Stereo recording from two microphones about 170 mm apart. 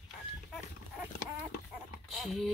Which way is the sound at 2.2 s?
Centre (ahead or behind).